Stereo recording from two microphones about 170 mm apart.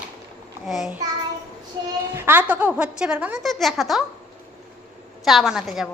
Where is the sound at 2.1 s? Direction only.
10° right (ahead or behind).